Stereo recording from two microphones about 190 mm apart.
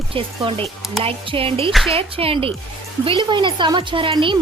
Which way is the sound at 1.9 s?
30° right (ahead or behind).